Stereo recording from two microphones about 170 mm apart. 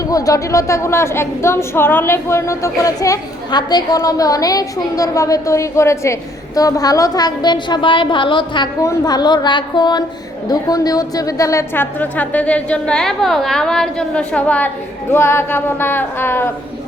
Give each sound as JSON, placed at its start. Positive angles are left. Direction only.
{"t": 0.0, "sound": "a woman's voice", "side_deg": 20}